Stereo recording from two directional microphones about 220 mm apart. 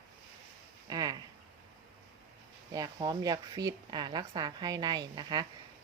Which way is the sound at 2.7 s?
15° right (ahead or behind).